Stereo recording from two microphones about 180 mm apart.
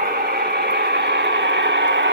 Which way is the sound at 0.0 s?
60° right (ahead or behind).